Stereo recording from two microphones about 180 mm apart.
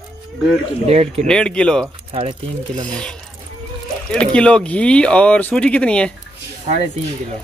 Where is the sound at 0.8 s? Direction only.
35° right (ahead or behind).